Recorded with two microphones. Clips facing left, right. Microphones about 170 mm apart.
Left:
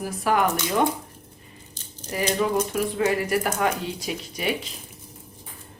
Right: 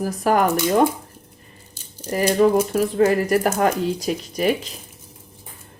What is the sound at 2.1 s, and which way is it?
Speech, 45° right (ahead or behind).